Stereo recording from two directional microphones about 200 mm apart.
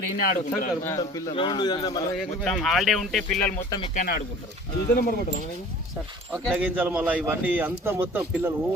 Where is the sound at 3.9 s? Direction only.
45° left (ahead or behind).